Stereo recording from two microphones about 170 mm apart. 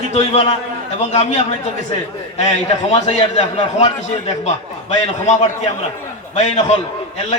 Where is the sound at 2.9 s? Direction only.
40° left (ahead or behind).